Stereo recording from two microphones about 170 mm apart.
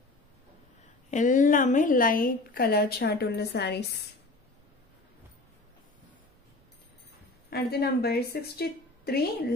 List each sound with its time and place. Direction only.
1.1 s a woman's voice: 50° left (ahead or behind); by 3.8 s 75° left (ahead or behind)
7.4 s a woman's voice: 70° left (ahead or behind)